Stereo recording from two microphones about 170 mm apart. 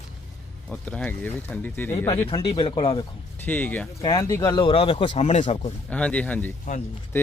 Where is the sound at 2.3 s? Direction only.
30° left (ahead or behind).